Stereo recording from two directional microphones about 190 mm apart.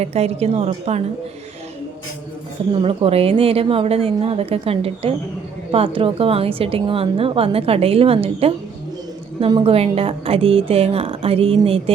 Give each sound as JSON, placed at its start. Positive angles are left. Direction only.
{"t": 0.0, "sound": "a woman's voice", "side_deg": -35}
{"t": 2.8, "sound": "a woman's voice", "side_deg": -30}